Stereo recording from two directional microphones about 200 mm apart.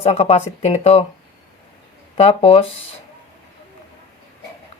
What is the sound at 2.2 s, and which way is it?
Speech, 30° left (ahead or behind).